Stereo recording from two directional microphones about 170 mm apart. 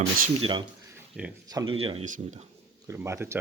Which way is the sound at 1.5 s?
20° right (ahead or behind).